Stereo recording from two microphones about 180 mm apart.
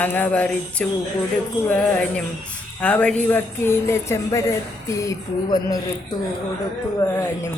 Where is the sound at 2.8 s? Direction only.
5° left (ahead or behind).